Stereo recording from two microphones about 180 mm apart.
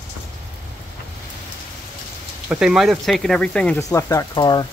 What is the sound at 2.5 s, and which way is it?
Speech, 5° right (ahead or behind).